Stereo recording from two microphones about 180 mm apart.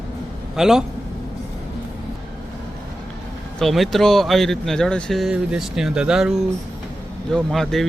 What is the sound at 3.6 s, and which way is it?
Speech, centre (ahead or behind).